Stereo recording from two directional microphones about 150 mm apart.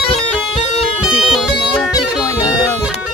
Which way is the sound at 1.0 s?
5° right (ahead or behind).